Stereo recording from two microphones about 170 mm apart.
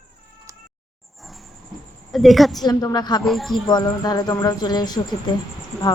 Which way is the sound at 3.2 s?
Centre (ahead or behind).